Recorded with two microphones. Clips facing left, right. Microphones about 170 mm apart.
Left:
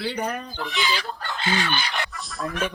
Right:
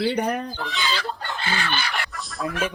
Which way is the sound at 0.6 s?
20° left (ahead or behind).